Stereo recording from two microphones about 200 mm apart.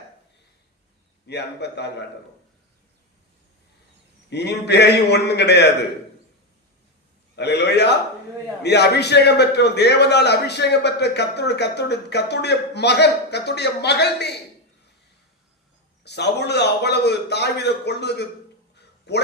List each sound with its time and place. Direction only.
1.3 s a man's voice: 55° left (ahead or behind)
4.3 s a man's voice: 55° left (ahead or behind)
7.3 s a man's voice: 55° left (ahead or behind)
16.0 s a man's voice: 55° left (ahead or behind)